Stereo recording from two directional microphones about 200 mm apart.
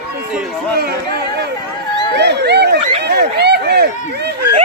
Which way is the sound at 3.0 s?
55° right (ahead or behind).